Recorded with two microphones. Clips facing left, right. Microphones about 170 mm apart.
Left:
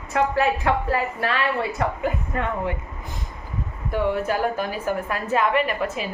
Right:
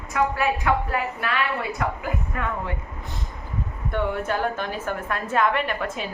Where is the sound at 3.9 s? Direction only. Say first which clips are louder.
Left 3 dB; 5° left (ahead or behind).